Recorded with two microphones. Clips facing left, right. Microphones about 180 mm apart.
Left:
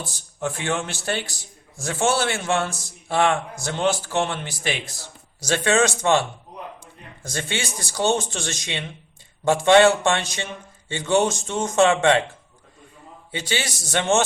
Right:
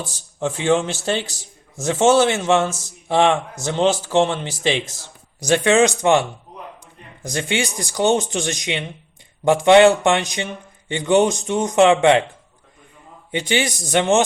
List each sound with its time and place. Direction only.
0.0 s speech: 20° right (ahead or behind)
13.5 s speech: 20° right (ahead or behind)